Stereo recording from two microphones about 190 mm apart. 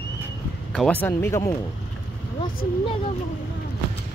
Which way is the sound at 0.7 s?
5° left (ahead or behind).